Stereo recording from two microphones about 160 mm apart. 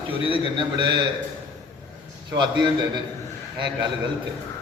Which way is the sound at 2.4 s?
30° right (ahead or behind).